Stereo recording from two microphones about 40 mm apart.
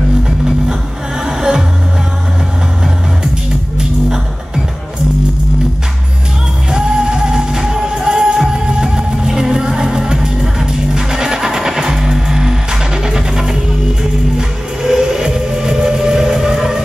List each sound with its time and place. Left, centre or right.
1.2 s music: centre
6.7 s music: centre
14.8 s music: centre